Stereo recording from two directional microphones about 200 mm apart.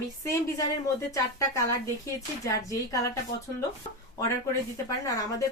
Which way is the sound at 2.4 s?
15° left (ahead or behind).